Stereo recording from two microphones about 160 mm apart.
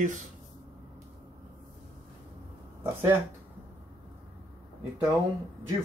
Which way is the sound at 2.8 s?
15° right (ahead or behind).